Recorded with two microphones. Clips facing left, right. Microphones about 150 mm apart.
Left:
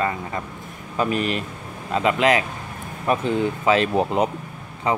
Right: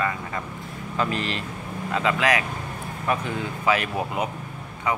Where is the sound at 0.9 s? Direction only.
20° left (ahead or behind).